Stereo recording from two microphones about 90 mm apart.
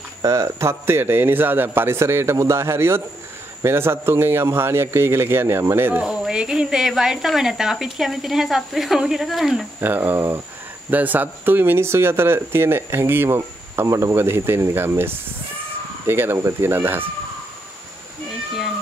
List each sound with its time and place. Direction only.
0.2 s speech: 35° right (ahead or behind)
6.0 s speech: 10° right (ahead or behind)
9.8 s speech: 20° right (ahead or behind)